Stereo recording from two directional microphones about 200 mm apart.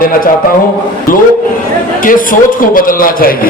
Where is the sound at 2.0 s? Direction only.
45° left (ahead or behind).